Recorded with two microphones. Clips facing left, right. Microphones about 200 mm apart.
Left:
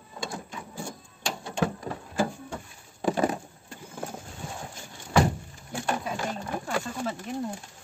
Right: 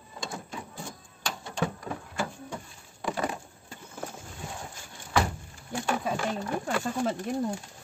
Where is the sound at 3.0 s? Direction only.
35° left (ahead or behind).